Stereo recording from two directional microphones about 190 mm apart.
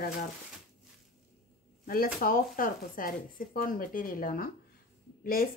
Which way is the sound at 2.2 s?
50° left (ahead or behind).